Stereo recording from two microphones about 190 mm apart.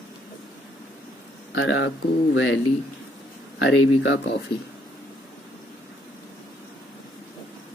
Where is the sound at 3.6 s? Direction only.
70° left (ahead or behind).